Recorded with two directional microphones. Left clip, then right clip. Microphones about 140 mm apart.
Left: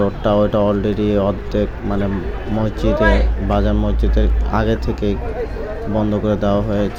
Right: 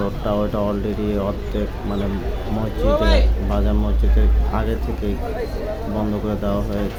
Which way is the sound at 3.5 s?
30° left (ahead or behind).